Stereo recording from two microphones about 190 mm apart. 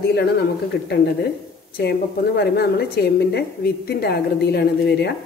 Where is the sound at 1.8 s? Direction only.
60° left (ahead or behind).